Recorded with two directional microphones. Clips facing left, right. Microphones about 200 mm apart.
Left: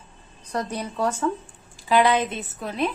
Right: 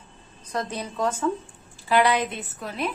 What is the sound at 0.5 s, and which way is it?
A woman's voice, 10° left (ahead or behind).